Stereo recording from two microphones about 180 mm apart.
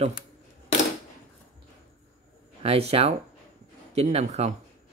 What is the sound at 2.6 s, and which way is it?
Speech, 35° right (ahead or behind).